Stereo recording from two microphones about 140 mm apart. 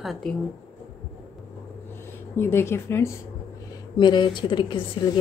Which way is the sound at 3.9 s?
35° left (ahead or behind).